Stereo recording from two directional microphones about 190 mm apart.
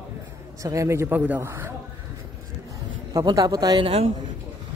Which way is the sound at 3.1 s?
20° right (ahead or behind).